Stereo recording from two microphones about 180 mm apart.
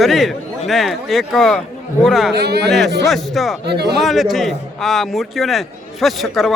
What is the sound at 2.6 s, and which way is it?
Speech, centre (ahead or behind).